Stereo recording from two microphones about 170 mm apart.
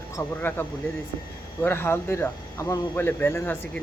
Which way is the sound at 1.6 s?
15° left (ahead or behind).